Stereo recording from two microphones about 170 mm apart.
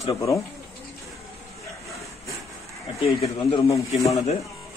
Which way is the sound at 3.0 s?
35° left (ahead or behind).